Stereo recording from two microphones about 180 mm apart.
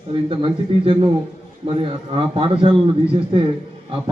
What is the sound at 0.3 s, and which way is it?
A man's voice, 30° right (ahead or behind).